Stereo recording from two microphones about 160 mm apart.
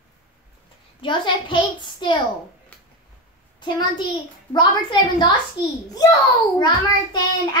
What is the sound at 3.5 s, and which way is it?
A child's voice, 25° left (ahead or behind).